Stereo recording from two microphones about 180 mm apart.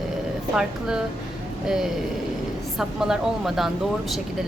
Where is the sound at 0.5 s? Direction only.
5° right (ahead or behind).